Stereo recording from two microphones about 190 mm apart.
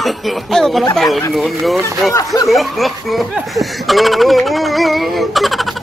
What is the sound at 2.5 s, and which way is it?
Speech, centre (ahead or behind).